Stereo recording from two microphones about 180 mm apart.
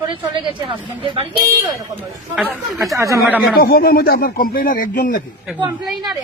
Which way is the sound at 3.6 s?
55° left (ahead or behind).